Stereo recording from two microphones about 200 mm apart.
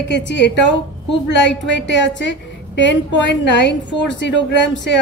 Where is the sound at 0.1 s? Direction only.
60° left (ahead or behind).